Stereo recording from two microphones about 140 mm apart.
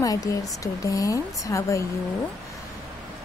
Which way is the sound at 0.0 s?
25° left (ahead or behind).